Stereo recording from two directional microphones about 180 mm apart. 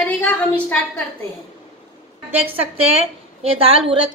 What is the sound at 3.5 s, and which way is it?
Speech, 30° right (ahead or behind).